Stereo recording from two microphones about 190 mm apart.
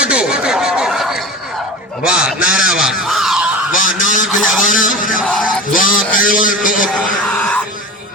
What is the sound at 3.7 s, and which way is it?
Goose, 45° left (ahead or behind).